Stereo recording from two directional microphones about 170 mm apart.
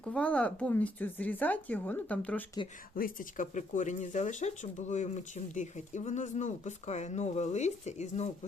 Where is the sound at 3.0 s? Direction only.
50° left (ahead or behind).